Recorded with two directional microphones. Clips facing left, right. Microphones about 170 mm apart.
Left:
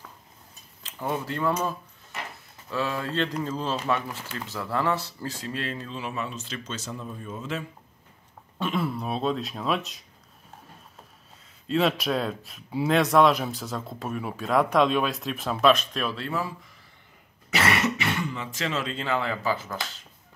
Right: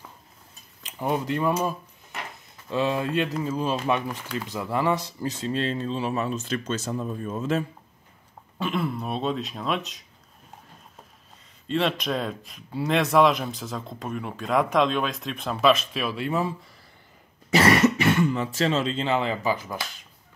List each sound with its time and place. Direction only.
0.8 s speech: 15° right (ahead or behind)
2.7 s speech: 20° right (ahead or behind); by 7.6 s 45° right (ahead or behind)
8.5 s speech: centre (ahead or behind)
11.6 s speech: 5° left (ahead or behind); by 16.5 s 20° right (ahead or behind)
17.5 s speech: 35° right (ahead or behind); by 19.6 s 15° right (ahead or behind)